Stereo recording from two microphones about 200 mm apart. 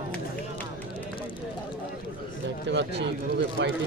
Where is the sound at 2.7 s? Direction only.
65° right (ahead or behind).